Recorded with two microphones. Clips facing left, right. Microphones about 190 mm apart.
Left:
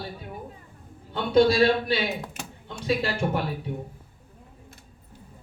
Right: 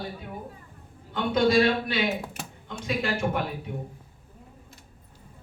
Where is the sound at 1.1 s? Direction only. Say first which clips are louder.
Left 2 dB; 35° left (ahead or behind).